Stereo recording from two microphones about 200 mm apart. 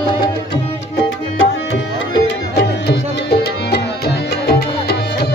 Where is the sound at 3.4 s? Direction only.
55° left (ahead or behind).